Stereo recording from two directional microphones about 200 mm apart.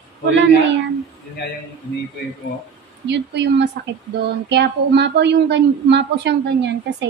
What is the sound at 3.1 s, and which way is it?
A woman's voice, 60° right (ahead or behind).